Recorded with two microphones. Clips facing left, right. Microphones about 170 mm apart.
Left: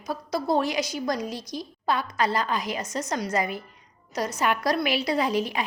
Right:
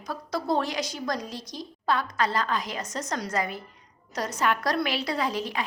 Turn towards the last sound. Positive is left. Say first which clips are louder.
# left 4 dB
turn(degrees=15)  # may be behind; listen again after turning